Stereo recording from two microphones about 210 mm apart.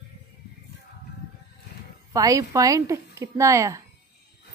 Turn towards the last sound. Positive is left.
turn(degrees=-15)  # may be behind; listen again after turning